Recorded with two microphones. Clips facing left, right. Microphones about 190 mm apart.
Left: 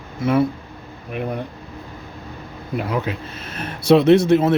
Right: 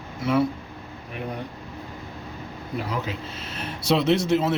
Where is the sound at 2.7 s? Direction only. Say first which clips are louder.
Left 6 dB; 60° left (ahead or behind).